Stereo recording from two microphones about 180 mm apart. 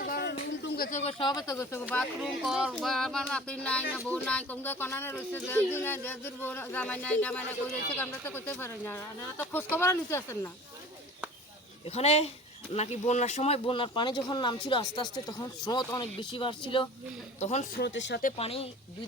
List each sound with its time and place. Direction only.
0.0 s a sound: 55° left (ahead or behind)
0.9 s speech: 40° left (ahead or behind)
1.2 s speech: 20° left (ahead or behind)
11.9 s speech: 35° left (ahead or behind)
17.4 s speech: 40° left (ahead or behind)
17.7 s speech: 65° left (ahead or behind)
18.3 s speech: 35° left (ahead or behind)